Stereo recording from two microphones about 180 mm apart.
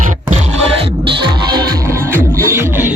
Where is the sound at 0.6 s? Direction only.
25° right (ahead or behind).